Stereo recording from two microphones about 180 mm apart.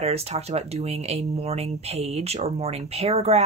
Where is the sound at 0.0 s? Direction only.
35° right (ahead or behind).